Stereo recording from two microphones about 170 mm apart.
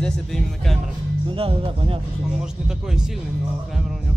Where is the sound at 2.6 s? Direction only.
5° right (ahead or behind).